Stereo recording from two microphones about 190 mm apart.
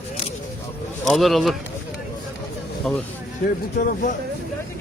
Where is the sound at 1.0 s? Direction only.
Centre (ahead or behind).